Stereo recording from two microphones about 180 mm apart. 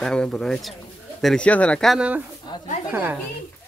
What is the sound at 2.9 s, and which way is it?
Speech, 10° right (ahead or behind).